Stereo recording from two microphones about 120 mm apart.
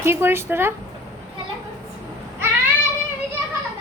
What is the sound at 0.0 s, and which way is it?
Speech, 20° right (ahead or behind).